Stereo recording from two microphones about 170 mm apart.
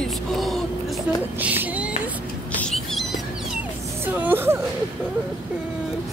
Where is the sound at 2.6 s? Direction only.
Centre (ahead or behind).